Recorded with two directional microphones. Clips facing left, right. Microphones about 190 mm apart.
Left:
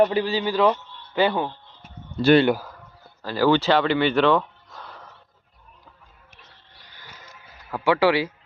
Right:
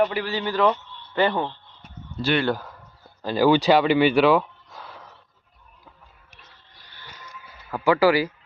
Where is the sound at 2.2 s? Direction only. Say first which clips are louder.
Left 8 dB; 60° left (ahead or behind).